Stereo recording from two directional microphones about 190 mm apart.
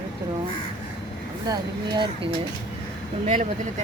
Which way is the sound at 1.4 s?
20° right (ahead or behind).